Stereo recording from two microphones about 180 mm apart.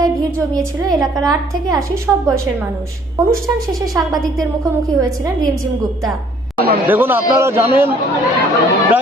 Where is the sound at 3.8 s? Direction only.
20° right (ahead or behind).